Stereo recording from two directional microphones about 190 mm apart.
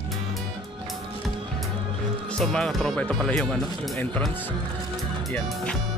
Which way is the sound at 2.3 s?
5° left (ahead or behind).